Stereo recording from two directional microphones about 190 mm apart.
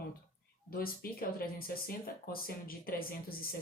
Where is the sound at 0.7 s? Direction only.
50° left (ahead or behind).